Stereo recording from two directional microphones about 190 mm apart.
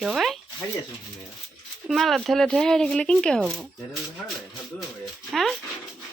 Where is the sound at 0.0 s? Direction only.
Centre (ahead or behind).